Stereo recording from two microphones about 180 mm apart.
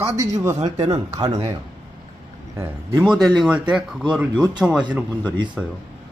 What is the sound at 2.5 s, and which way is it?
Speech, 20° right (ahead or behind).